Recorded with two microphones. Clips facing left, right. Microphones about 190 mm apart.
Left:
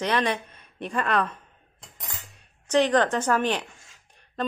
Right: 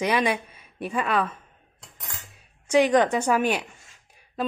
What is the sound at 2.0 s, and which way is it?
Cutlery, centre (ahead or behind).